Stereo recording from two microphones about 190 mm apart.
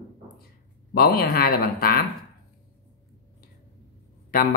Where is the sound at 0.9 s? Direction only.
50° left (ahead or behind).